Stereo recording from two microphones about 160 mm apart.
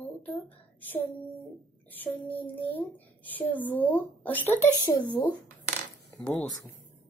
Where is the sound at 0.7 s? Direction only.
10° left (ahead or behind).